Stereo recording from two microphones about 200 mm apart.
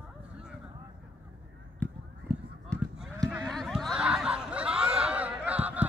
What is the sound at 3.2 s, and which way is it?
Snicker, centre (ahead or behind).